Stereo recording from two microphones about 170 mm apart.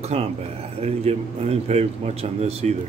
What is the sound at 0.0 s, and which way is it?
Speech, 40° right (ahead or behind).